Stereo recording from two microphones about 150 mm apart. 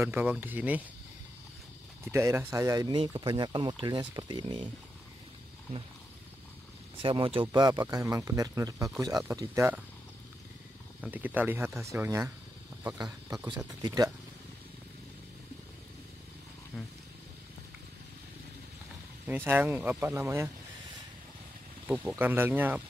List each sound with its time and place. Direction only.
0.0 s speech: 15° right (ahead or behind)
2.0 s speech: 15° right (ahead or behind)
7.0 s speech: 35° right (ahead or behind)
11.0 s speech: 10° right (ahead or behind)
16.7 s speech: 5° right (ahead or behind)
19.2 s speech: 15° right (ahead or behind)
21.8 s speech: 10° right (ahead or behind)